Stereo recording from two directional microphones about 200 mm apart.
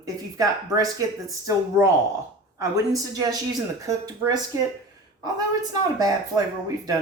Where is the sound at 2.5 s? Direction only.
15° right (ahead or behind).